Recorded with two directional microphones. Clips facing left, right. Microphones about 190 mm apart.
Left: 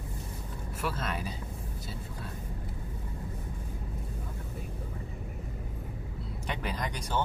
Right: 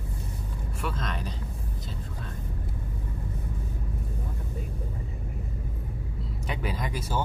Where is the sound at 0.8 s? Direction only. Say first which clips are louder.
Even; 5° left (ahead or behind).